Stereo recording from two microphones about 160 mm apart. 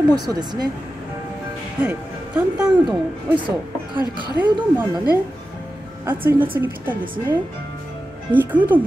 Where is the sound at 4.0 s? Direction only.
25° left (ahead or behind).